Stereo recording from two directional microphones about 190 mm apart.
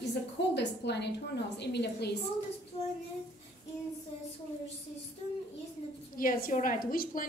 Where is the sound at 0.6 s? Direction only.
65° left (ahead or behind).